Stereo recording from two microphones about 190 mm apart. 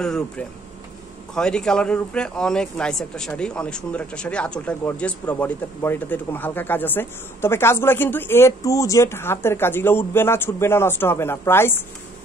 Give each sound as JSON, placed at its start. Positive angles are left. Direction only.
{"t": 0.0, "sound": "speech", "side_deg": 5}